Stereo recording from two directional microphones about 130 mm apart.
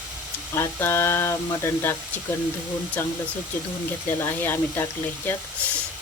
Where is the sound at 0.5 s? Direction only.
20° left (ahead or behind).